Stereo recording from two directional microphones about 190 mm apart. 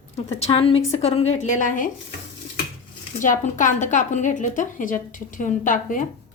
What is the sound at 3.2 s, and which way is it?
A woman's voice, 40° left (ahead or behind).